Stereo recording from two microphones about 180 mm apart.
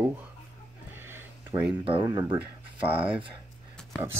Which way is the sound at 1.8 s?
25° right (ahead or behind).